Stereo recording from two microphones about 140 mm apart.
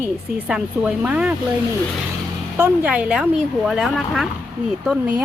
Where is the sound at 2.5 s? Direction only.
10° right (ahead or behind).